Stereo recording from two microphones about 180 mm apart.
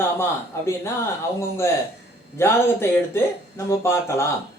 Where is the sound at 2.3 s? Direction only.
15° left (ahead or behind).